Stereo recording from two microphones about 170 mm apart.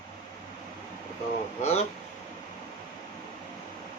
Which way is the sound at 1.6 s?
40° left (ahead or behind).